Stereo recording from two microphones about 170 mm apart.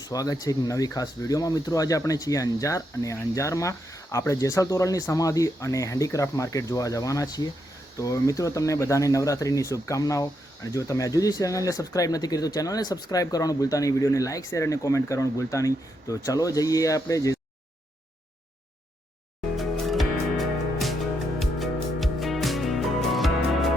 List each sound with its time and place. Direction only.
0.0 s speech: 20° left (ahead or behind)
19.5 s music: centre (ahead or behind)